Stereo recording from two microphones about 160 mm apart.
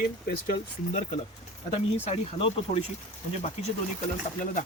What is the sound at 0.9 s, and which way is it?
Speech, 45° left (ahead or behind).